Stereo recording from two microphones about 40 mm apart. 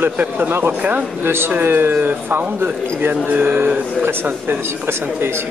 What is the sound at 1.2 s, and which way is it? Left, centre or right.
Speech, right.